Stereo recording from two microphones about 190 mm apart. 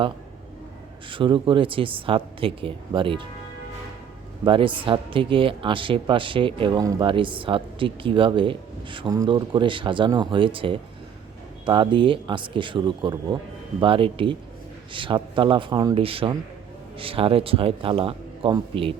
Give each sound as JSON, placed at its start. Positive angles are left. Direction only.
{"t": 1.1, "sound": "speech", "side_deg": -25}
{"t": 4.4, "sound": "speech", "side_deg": -25}